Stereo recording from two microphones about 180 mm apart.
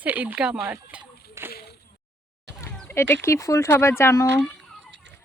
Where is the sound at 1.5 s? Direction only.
60° left (ahead or behind).